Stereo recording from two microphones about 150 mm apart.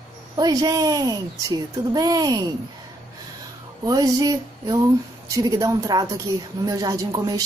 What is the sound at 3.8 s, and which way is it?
A woman's voice, 25° right (ahead or behind).